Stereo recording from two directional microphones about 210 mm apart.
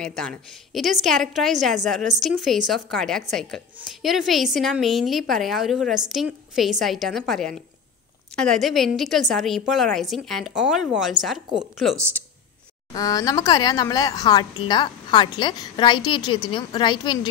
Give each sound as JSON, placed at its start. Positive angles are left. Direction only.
{"t": 0.0, "sound": "a woman's voice", "side_deg": 5}
{"t": 12.9, "sound": "a woman's voice", "side_deg": 15}